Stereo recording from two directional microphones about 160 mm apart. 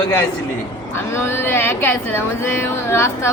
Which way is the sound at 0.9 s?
15° left (ahead or behind).